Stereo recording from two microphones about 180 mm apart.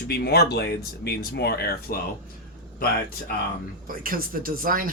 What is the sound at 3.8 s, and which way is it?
Speech, 50° right (ahead or behind).